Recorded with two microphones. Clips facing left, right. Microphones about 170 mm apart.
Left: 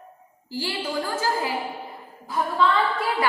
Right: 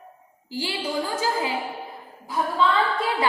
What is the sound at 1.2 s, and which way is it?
Speech, 20° right (ahead or behind).